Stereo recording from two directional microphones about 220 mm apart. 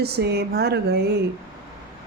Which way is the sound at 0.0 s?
45° right (ahead or behind).